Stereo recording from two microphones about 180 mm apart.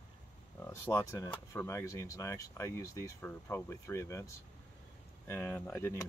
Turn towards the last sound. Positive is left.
turn(degrees=15)  # may be behind; listen again after turning